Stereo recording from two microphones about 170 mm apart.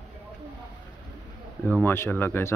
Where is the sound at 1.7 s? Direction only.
10° left (ahead or behind).